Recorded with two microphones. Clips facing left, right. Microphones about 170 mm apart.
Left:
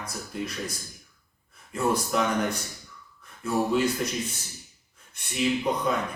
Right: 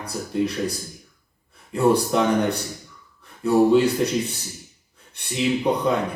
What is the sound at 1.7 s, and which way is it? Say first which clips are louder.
Speech: right 7 dB; 30° right (ahead or behind).